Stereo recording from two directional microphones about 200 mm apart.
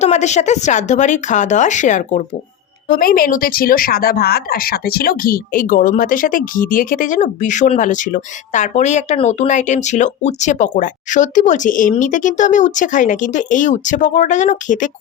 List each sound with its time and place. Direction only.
0.0 s speech: 35° left (ahead or behind)